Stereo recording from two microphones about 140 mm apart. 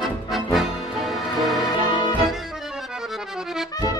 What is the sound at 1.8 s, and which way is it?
Music, 35° left (ahead or behind).